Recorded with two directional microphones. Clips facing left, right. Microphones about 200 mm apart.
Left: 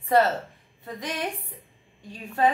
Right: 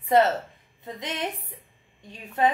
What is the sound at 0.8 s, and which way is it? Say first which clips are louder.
Speech: even; 20° right (ahead or behind).